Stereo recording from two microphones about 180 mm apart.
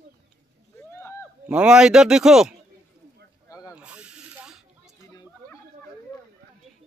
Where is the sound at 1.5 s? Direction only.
5° right (ahead or behind).